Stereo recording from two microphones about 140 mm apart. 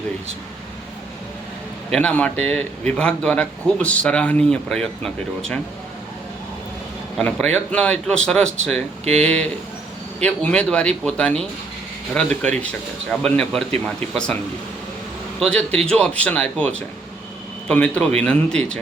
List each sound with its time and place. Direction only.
1.9 s a man's voice: 10° left (ahead or behind)
7.2 s a man's voice: 10° left (ahead or behind)
8.7 s speech: 50° right (ahead or behind)
9.2 s a man's voice: 5° left (ahead or behind)
15.4 s a man's voice: 5° left (ahead or behind)